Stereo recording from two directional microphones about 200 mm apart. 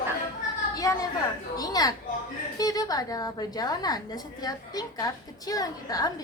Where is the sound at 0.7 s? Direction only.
15° left (ahead or behind).